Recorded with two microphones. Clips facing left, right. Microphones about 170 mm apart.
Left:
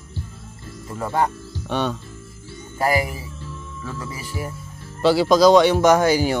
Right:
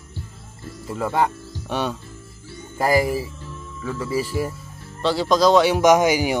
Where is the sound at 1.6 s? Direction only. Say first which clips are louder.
Left 1 dB; 5° right (ahead or behind).